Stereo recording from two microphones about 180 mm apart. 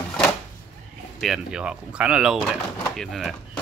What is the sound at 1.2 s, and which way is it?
Speech, 5° right (ahead or behind).